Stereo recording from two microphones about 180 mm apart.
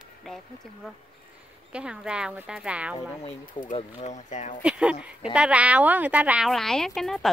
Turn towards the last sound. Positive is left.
turn(degrees=0)  # may be behind; listen again after turning